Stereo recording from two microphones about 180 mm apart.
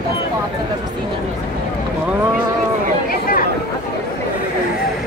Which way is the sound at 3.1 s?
50° left (ahead or behind).